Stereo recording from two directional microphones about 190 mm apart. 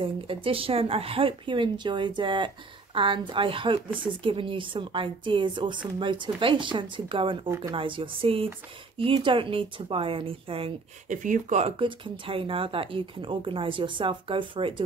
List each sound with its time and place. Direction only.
0.0 s speech: 30° right (ahead or behind)
7.4 s speech: 15° right (ahead or behind)
7.7 s speech: 25° right (ahead or behind)
11.1 s speech: 40° right (ahead or behind); by 14.8 s 25° right (ahead or behind)